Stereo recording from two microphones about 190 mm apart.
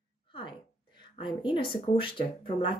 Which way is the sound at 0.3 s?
25° left (ahead or behind).